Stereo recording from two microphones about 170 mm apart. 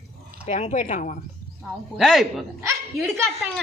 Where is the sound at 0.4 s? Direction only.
45° left (ahead or behind).